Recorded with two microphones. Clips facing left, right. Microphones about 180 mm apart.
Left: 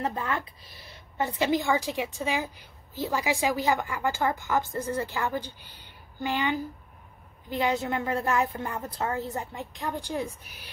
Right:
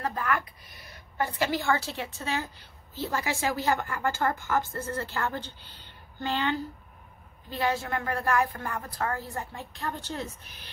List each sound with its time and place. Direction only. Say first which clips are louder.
0.0 s a woman's voice: even; 25° left (ahead or behind)